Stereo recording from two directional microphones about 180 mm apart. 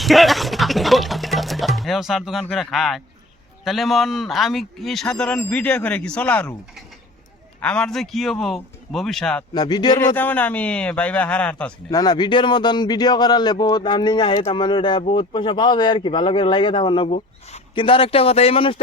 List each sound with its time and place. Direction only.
0.0 s a man's voice: centre (ahead or behind)
7.6 s a man's voice: 5° left (ahead or behind)
9.6 s a man's voice: 25° left (ahead or behind)
10.2 s speech: 10° left (ahead or behind)
11.9 s a man's voice: 20° left (ahead or behind)